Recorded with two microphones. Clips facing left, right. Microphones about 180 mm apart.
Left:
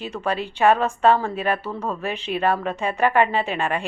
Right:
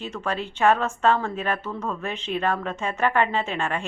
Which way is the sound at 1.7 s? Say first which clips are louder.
Left 2 dB; 30° left (ahead or behind).